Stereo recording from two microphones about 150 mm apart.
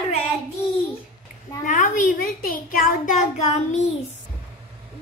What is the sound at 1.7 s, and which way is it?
A child's voice, 70° left (ahead or behind).